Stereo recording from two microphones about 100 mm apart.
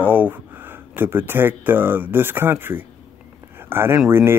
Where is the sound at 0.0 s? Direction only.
20° right (ahead or behind).